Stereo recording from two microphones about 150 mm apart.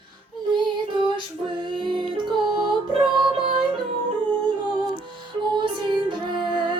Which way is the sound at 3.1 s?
30° right (ahead or behind).